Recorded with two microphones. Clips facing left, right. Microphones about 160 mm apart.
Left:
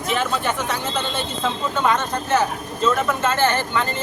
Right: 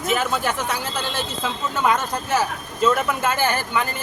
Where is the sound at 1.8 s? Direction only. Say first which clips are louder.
Right 1 dB; 5° right (ahead or behind).